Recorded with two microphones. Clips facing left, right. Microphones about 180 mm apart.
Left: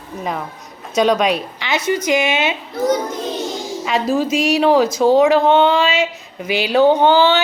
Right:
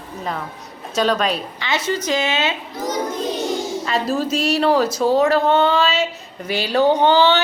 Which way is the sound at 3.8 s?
10° left (ahead or behind).